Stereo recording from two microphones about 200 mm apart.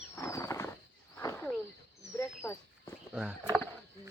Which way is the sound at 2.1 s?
10° left (ahead or behind).